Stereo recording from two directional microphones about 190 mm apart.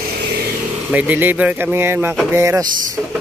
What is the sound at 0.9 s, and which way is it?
Speech, 10° right (ahead or behind).